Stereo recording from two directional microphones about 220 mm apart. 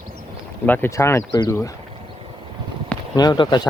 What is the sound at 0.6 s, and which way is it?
Speech, 10° left (ahead or behind).